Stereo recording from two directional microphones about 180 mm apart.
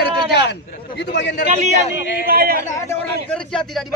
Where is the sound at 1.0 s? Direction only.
75° left (ahead or behind).